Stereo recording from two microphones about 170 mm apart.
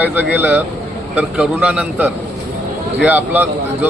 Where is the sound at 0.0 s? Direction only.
10° right (ahead or behind).